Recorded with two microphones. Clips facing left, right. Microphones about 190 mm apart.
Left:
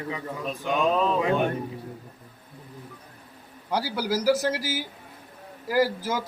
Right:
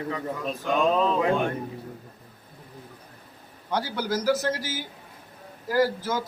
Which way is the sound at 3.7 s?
10° left (ahead or behind).